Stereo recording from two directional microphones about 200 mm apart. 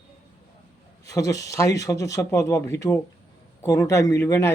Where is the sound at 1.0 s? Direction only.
15° left (ahead or behind).